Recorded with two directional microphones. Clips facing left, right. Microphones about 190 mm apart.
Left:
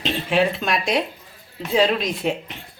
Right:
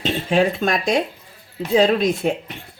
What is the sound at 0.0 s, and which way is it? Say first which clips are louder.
Speech: right 2 dB; 45° right (ahead or behind).